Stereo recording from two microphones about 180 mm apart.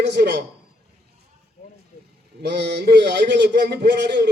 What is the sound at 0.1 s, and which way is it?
Speech, 70° right (ahead or behind).